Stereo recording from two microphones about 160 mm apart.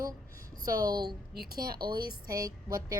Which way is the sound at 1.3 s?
70° right (ahead or behind).